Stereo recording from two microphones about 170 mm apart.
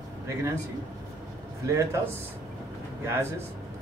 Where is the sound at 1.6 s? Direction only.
20° right (ahead or behind).